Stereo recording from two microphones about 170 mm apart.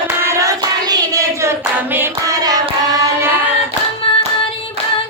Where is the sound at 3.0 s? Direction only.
20° right (ahead or behind).